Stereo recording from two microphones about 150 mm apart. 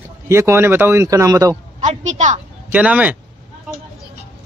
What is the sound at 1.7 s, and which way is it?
Speech, 50° right (ahead or behind).